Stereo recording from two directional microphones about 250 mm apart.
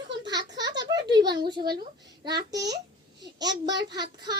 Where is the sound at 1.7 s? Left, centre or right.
Right.